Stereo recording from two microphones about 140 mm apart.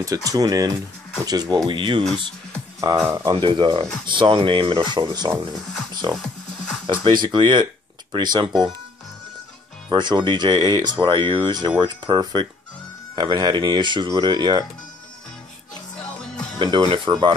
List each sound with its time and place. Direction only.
0.0 s speech: 25° right (ahead or behind)
2.8 s speech: 20° right (ahead or behind)
3.3 s speech: 35° right (ahead or behind)
6.9 s speech: 35° right (ahead or behind)
9.8 s speech: 35° right (ahead or behind)
16.5 s speech: 35° right (ahead or behind)